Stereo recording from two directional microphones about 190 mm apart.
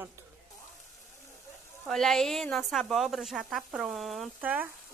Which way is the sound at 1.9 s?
Centre (ahead or behind).